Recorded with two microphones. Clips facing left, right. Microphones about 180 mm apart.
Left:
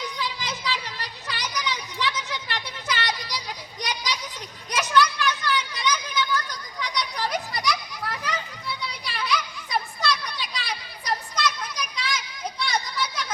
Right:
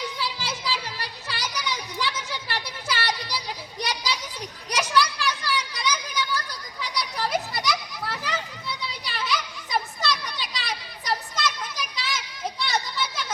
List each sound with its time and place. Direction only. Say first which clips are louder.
0.2 s children playing: even; 10° right (ahead or behind)
5.8 s a sound: left 2 dB; 10° right (ahead or behind)
6.5 s children playing: left 1 dB; 5° right (ahead or behind)